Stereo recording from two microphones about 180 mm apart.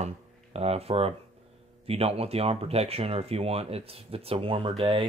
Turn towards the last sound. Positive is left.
turn(degrees=-30)  # may be behind; listen again after turning